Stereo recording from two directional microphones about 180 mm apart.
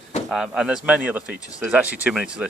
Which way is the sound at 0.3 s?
Centre (ahead or behind).